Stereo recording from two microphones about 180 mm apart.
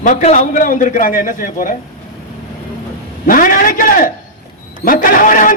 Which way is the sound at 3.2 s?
50° left (ahead or behind).